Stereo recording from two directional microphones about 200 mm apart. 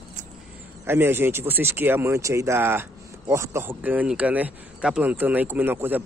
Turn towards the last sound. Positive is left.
turn(degrees=-10)  # may be behind; listen again after turning